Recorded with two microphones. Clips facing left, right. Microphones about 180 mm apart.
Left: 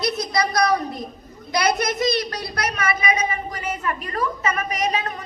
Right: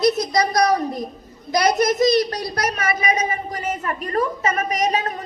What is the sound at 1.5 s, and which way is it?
A woman's voice, 40° right (ahead or behind).